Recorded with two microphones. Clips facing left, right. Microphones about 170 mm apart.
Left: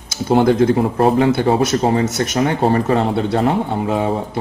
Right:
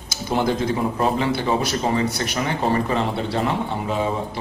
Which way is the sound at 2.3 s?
45° left (ahead or behind).